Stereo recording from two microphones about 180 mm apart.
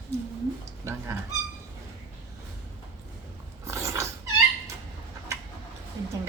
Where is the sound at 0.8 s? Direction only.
15° right (ahead or behind).